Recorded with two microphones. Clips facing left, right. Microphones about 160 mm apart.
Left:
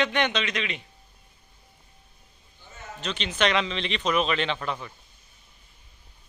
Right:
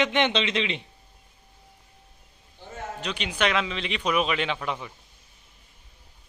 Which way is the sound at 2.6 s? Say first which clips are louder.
Right 9 dB; 90° right.